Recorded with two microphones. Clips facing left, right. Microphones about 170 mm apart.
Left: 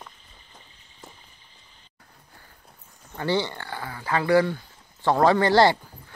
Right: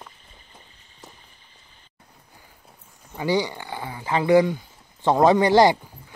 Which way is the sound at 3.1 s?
10° right (ahead or behind).